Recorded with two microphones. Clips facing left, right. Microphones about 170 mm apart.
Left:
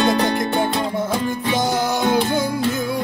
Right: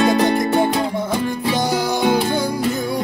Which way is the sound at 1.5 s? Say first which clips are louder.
Left 1 dB; centre (ahead or behind).